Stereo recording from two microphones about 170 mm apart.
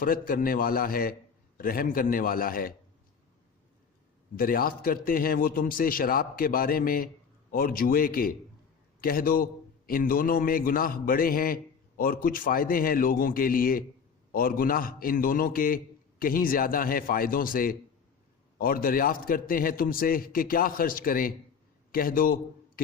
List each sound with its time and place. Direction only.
0.0 s a man's voice: 55° left (ahead or behind)
4.4 s a man's voice: 55° left (ahead or behind)